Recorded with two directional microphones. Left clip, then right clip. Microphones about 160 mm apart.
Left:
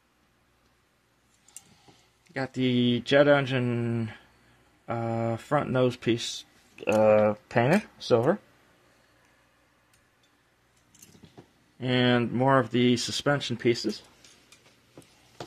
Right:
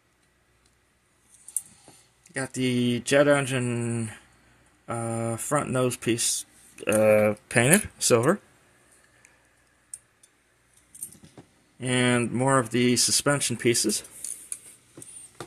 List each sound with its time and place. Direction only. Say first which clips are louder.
2.2 s speech: even; 10° right (ahead or behind); by 8.4 s 25° right (ahead or behind)
11.8 s speech: even; 15° right (ahead or behind); by 13.9 s 40° right (ahead or behind)